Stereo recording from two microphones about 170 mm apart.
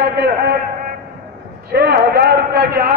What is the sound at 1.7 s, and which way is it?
A man's voice, 70° right (ahead or behind).